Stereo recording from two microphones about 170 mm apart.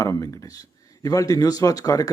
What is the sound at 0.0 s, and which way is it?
Speech, 20° left (ahead or behind).